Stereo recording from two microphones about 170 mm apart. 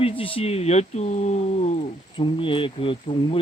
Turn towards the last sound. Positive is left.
turn(degrees=35)  # may be behind; listen again after turning